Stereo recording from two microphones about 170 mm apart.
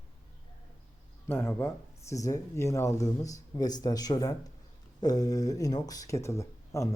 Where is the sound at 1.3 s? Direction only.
15° left (ahead or behind).